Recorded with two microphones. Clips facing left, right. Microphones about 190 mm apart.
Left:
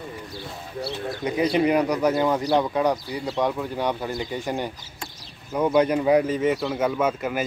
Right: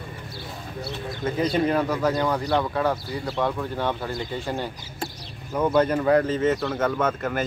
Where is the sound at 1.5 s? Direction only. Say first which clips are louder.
Left 4 dB; 15° left (ahead or behind).